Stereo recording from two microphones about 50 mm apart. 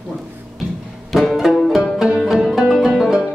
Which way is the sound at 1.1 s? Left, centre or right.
Centre.